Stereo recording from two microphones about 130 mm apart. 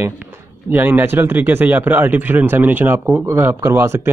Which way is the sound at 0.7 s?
15° right (ahead or behind).